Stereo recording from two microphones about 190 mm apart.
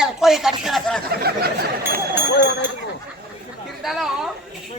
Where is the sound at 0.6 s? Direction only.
Centre (ahead or behind).